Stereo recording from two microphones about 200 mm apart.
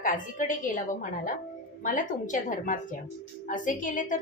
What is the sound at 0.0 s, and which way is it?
A woman's voice, 40° left (ahead or behind).